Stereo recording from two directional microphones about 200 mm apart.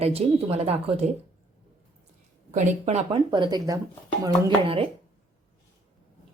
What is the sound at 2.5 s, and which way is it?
Speech, 35° right (ahead or behind).